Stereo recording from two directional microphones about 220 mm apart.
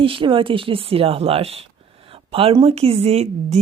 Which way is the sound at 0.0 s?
25° right (ahead or behind).